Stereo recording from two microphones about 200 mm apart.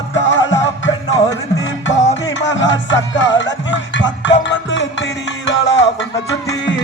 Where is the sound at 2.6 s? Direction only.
65° left (ahead or behind).